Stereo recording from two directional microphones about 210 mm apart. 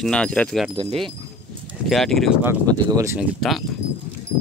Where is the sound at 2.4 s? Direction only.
15° right (ahead or behind).